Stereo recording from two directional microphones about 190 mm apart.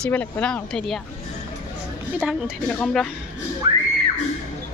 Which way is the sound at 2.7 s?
5° left (ahead or behind).